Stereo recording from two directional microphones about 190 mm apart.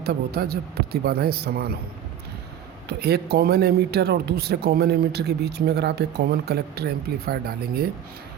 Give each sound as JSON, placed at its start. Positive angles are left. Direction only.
{"t": 0.0, "sound": "speech", "side_deg": -55}
{"t": 3.0, "sound": "speech", "side_deg": -60}